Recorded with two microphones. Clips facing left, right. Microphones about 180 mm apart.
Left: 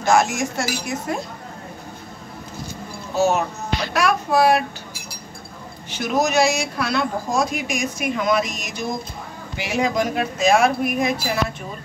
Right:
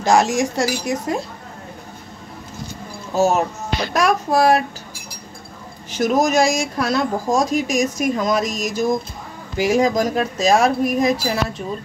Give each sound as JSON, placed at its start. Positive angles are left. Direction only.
{"t": 0.0, "sound": "speech", "side_deg": -35}
{"t": 3.2, "sound": "speech", "side_deg": -45}
{"t": 5.9, "sound": "speech", "side_deg": -45}